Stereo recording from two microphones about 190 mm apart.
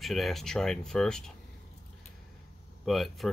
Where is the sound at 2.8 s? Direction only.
Centre (ahead or behind).